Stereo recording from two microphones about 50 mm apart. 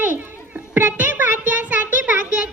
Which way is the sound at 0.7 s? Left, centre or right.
Right.